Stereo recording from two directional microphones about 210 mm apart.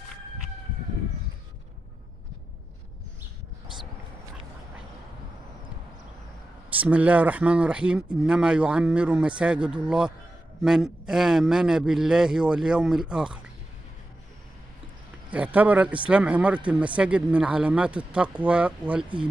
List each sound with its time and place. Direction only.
6.7 s a man's voice: 5° right (ahead or behind)
15.3 s a man's voice: 5° right (ahead or behind)